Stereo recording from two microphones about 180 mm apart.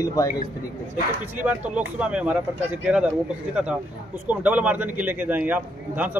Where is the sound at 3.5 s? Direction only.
5° right (ahead or behind).